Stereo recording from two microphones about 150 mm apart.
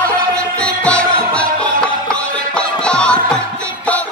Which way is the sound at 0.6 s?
5° left (ahead or behind).